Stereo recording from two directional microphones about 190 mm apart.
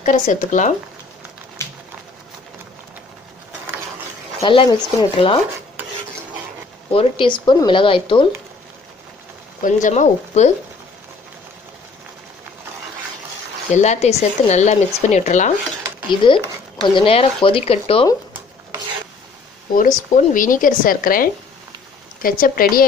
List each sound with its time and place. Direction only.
0.0 s a woman's voice: 45° left (ahead or behind)
1.6 s a sound: 15° left (ahead or behind)
4.4 s speech: 30° left (ahead or behind)
6.9 s speech: 30° left (ahead or behind)
9.6 s speech: 40° left (ahead or behind)
13.7 s speech: 35° left (ahead or behind)
16.2 s speech: 25° left (ahead or behind)
20.2 s a woman's voice: 45° left (ahead or behind)